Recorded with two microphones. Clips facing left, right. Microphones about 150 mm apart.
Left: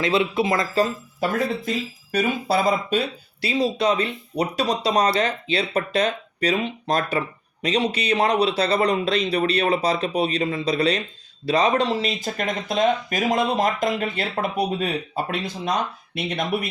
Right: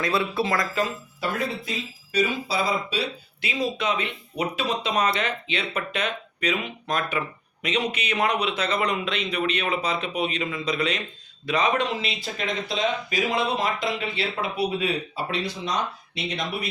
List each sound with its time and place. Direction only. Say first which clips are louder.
0.0 s speech: left 4 dB; 20° left (ahead or behind)
0.8 s speech: left 5 dB; 45° left (ahead or behind)
3.4 s speech: left 5 dB; 35° left (ahead or behind); by 16.6 s 55° left (ahead or behind)